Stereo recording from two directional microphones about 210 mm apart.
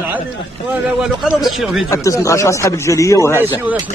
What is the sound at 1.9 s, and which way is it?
Speech, 15° left (ahead or behind).